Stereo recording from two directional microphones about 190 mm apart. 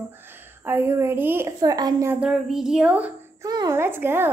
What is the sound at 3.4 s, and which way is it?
Speech, 20° right (ahead or behind).